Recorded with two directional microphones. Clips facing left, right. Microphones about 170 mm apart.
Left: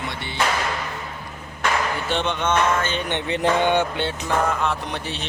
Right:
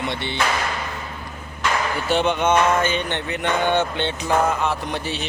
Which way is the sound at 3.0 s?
20° left (ahead or behind).